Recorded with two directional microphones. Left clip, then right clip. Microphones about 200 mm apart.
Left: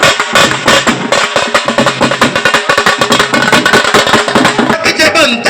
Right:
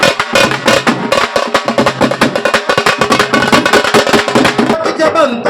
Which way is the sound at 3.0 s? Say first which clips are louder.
Left 1 dB; 35° right (ahead or behind).